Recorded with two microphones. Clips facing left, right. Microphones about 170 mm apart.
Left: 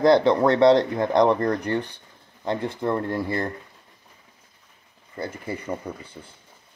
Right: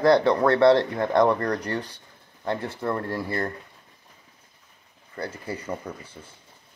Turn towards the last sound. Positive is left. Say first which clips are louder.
# left 2 dB
turn(degrees=10)  # may be behind; listen again after turning